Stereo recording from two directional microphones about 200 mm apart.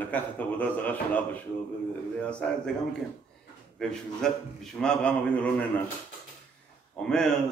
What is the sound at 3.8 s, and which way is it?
A man's voice, 5° left (ahead or behind).